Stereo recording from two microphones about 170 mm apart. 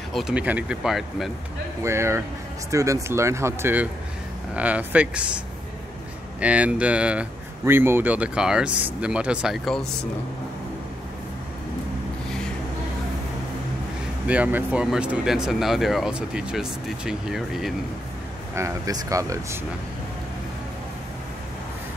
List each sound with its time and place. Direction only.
0.1 s speech: 5° right (ahead or behind)
1.8 s speech: 15° right (ahead or behind)
6.4 s speech: 5° right (ahead or behind)
14.2 s speech: 10° right (ahead or behind)
18.5 s speech: 20° right (ahead or behind)